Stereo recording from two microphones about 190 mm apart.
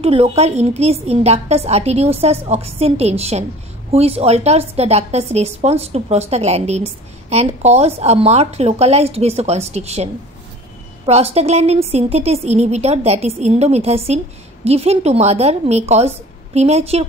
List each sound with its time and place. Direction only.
0.0 s a woman's voice: 30° right (ahead or behind)
11.1 s a woman's voice: 35° right (ahead or behind)